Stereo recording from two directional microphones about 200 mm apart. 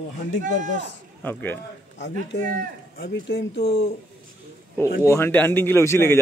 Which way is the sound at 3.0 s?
55° left (ahead or behind).